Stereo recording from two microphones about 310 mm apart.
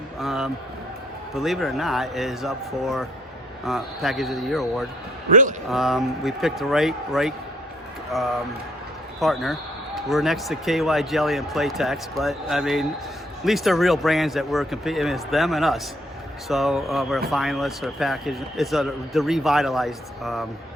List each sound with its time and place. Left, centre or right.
0.2 s speech: centre
5.3 s a man's voice: right
5.6 s speech: centre